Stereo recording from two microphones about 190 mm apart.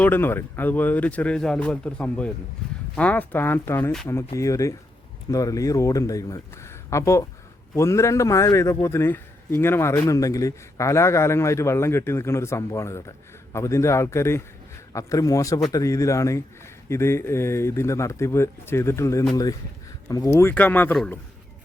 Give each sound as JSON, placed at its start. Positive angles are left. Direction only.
{"t": 0.0, "sound": "a man's voice", "side_deg": 10}